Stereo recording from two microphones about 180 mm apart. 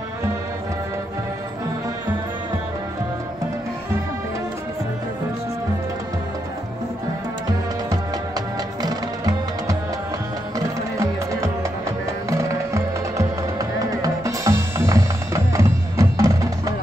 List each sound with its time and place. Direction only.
7.9 s music: 20° right (ahead or behind)
11.0 s music: 15° right (ahead or behind)